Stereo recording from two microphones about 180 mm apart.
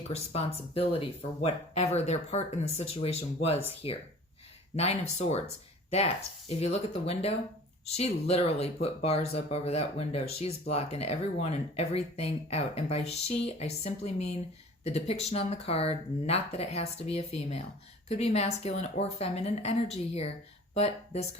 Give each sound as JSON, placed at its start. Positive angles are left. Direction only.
{"t": 0.1, "sound": "speech", "side_deg": 35}
{"t": 6.5, "sound": "speech", "side_deg": 35}